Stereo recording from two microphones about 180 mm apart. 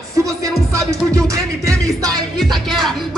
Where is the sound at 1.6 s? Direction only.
20° right (ahead or behind).